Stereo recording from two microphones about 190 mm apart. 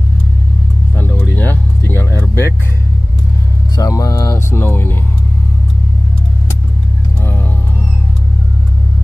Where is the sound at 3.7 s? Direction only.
20° left (ahead or behind).